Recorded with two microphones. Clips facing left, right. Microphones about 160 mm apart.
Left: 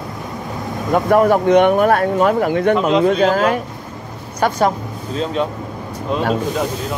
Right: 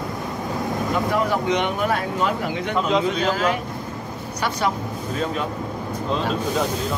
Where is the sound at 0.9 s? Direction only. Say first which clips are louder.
Left 11 dB; 55° left (ahead or behind).